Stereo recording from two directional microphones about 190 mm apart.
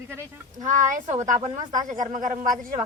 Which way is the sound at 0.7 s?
45° right (ahead or behind).